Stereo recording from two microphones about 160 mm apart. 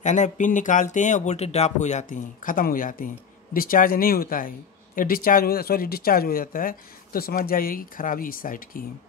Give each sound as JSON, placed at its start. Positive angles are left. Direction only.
{"t": 0.0, "sound": "speech", "side_deg": 50}